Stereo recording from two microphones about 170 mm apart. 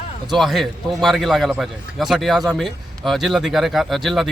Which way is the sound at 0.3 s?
Centre (ahead or behind).